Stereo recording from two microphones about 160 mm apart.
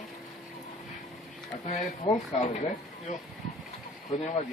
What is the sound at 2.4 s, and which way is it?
Speech, 45° left (ahead or behind).